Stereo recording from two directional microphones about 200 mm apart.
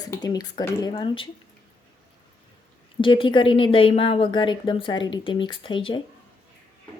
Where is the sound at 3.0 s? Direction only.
25° left (ahead or behind).